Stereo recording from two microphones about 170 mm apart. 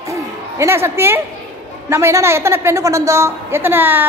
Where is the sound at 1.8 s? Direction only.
15° right (ahead or behind).